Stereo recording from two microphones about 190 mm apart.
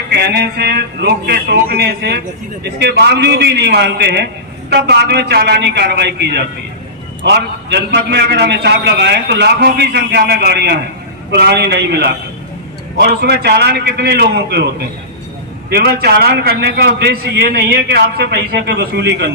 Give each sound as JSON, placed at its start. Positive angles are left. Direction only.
{"t": 0.1, "sound": "a man's voice", "side_deg": -60}
{"t": 13.2, "sound": "a man's voice", "side_deg": -60}
{"t": 15.7, "sound": "a man's voice", "side_deg": -55}